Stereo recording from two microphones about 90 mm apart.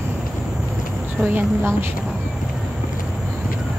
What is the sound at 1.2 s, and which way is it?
Speech, 25° right (ahead or behind).